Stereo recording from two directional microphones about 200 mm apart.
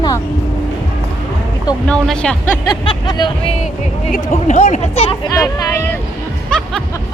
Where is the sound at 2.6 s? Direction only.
25° left (ahead or behind).